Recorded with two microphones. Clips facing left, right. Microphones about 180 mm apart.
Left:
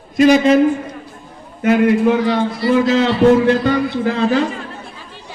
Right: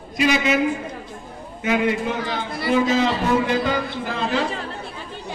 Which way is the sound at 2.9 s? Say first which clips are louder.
Left 8 dB; 75° left (ahead or behind).